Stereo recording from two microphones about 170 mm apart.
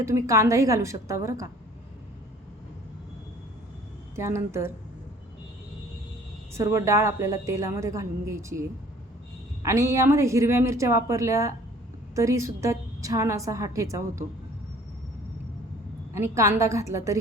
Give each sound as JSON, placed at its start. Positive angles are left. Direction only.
{"t": 0.0, "sound": "a woman's voice", "side_deg": -15}
{"t": 4.1, "sound": "a woman's voice", "side_deg": -15}
{"t": 6.5, "sound": "a woman's voice", "side_deg": -15}
{"t": 9.6, "sound": "a woman's voice", "side_deg": -15}
{"t": 16.1, "sound": "a woman's voice", "side_deg": -15}